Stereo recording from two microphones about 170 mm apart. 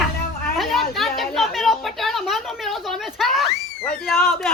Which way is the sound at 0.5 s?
Centre (ahead or behind).